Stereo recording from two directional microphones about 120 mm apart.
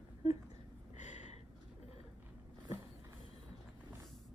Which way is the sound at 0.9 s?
80° left.